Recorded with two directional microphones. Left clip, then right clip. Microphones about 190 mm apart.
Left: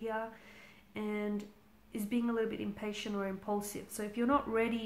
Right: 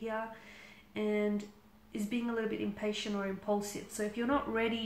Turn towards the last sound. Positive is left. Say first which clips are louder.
# left 1 dB
turn(degrees=40)  # may be behind; listen again after turning